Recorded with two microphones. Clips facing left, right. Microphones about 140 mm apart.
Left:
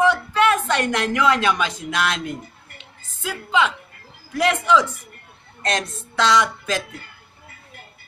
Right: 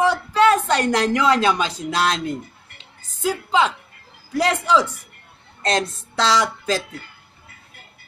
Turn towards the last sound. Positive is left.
turn(degrees=-35)  # may be behind; listen again after turning